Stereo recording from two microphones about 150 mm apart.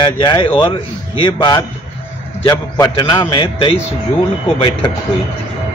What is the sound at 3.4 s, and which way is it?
Speech, 40° left (ahead or behind).